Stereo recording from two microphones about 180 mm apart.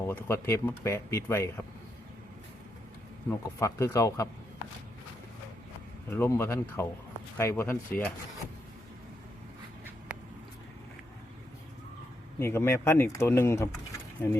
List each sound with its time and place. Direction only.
0.1 s speech: 15° left (ahead or behind)
3.2 s speech: 15° left (ahead or behind)
6.1 s speech: 15° left (ahead or behind)
10.1 s a sound: 5° right (ahead or behind)
12.4 s speech: 15° left (ahead or behind)